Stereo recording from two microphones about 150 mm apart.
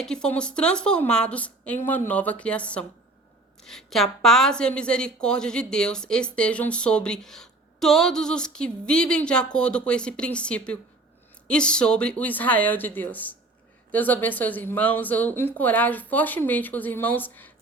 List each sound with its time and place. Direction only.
0.0 s a woman's voice: 5° left (ahead or behind)